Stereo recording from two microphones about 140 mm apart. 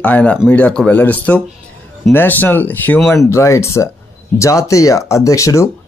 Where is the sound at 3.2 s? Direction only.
20° left (ahead or behind).